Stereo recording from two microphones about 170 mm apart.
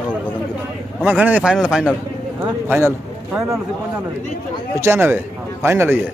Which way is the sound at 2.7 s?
15° right (ahead or behind).